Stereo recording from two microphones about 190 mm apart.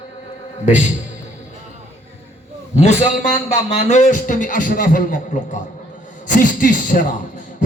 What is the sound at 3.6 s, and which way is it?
A man's voice, 35° left (ahead or behind).